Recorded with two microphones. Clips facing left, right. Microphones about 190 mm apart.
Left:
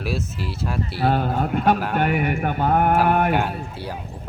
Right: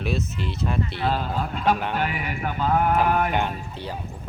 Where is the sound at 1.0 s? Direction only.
55° left (ahead or behind).